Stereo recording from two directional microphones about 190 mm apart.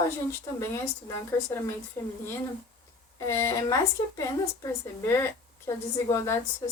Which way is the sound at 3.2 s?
15° left (ahead or behind).